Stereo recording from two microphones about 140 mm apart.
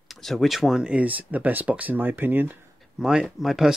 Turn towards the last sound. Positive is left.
turn(degrees=0)  # may be behind; listen again after turning